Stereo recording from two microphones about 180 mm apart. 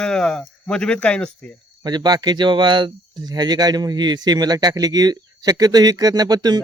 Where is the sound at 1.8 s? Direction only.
25° right (ahead or behind).